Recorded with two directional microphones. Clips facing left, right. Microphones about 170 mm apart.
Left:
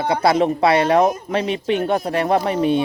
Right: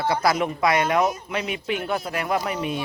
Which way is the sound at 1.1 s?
50° left (ahead or behind).